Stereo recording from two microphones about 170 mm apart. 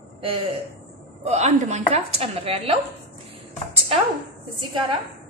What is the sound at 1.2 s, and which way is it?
A woman's voice, 40° right (ahead or behind).